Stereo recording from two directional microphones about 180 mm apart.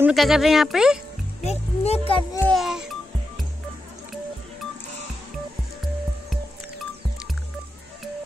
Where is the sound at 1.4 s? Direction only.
35° left (ahead or behind).